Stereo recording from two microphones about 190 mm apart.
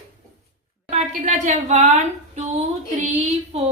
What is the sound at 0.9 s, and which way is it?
A woman's voice, 40° right (ahead or behind).